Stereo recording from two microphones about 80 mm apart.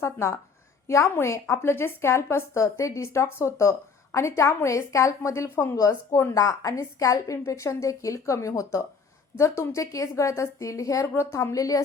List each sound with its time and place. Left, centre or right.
0.0 s a woman's voice: left